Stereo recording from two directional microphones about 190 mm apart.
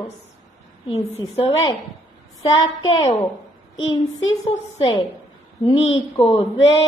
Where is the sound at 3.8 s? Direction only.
90° left.